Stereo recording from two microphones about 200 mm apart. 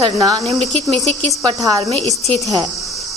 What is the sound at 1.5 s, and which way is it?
Speech, 25° right (ahead or behind).